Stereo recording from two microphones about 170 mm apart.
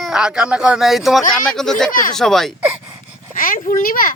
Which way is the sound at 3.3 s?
55° left (ahead or behind).